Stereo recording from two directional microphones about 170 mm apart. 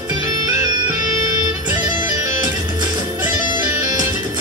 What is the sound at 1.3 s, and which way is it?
Music, 20° right (ahead or behind).